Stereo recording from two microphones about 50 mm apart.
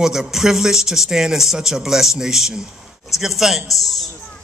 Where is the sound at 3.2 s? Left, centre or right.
Centre.